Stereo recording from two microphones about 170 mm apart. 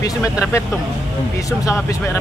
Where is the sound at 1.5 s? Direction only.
15° left (ahead or behind).